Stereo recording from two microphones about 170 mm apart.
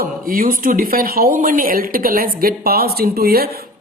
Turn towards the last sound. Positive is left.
turn(degrees=-65)  # may be behind; listen again after turning